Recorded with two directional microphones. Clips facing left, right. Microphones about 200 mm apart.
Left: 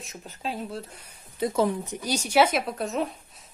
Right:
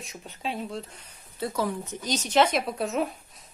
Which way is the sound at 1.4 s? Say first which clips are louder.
Left 4 dB; 20° left (ahead or behind).